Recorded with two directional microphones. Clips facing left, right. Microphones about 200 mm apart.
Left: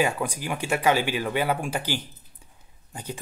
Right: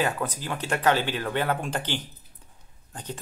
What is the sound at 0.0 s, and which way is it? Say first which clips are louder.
Speech: left 2 dB; 10° left (ahead or behind).